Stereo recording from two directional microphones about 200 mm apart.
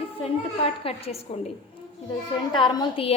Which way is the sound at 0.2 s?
30° left (ahead or behind).